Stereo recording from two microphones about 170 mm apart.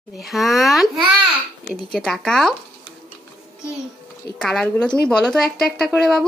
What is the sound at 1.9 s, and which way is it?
Speech, centre (ahead or behind).